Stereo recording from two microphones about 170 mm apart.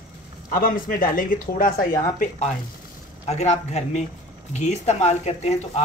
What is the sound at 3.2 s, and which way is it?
Speech, 40° left (ahead or behind).